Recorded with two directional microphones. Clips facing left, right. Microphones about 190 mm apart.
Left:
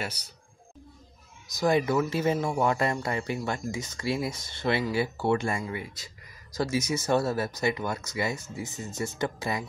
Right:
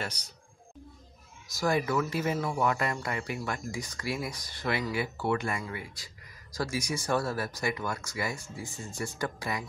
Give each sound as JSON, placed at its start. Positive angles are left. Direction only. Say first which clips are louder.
{"t": 1.6, "sound": "speech", "louder": "left 4 dB", "side_deg": 20}